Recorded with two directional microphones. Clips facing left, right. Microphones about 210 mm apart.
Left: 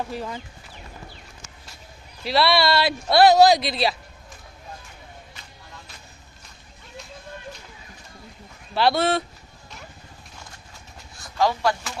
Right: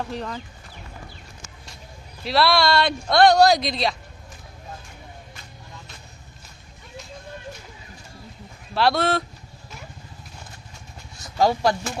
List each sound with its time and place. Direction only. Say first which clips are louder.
0.1 s speech: even; 5° left (ahead or behind)
2.2 s speech: even; centre (ahead or behind)
8.7 s speech: even; centre (ahead or behind)
11.3 s speech: right 2 dB; 35° right (ahead or behind)